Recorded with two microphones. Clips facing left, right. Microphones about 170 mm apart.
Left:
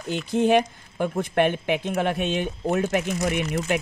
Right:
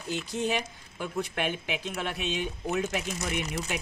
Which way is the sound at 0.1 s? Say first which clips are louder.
Left 10 dB; 55° left (ahead or behind).